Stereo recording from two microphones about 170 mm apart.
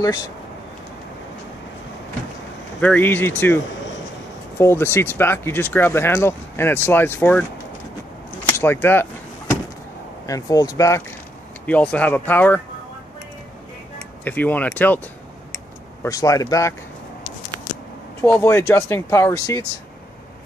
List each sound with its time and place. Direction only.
2.8 s speech: 10° left (ahead or behind)
8.5 s speech: 10° left (ahead or behind)
10.2 s speech: 20° left (ahead or behind)
11.6 s speech: 10° left (ahead or behind)
14.2 s speech: 10° left (ahead or behind)
16.0 s speech: 20° left (ahead or behind)
18.2 s speech: 15° left (ahead or behind)